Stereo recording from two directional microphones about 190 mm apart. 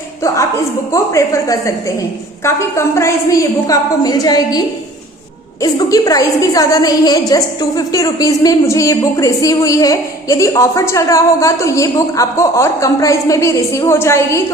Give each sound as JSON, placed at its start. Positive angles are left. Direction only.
{"t": 0.9, "sound": "a woman's voice", "side_deg": 15}
{"t": 5.6, "sound": "a woman's voice", "side_deg": 20}